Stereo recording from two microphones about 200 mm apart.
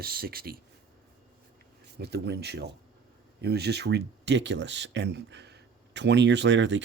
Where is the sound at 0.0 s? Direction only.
50° right (ahead or behind).